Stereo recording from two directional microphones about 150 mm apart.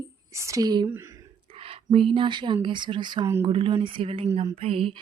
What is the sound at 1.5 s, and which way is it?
Speech, 40° right (ahead or behind).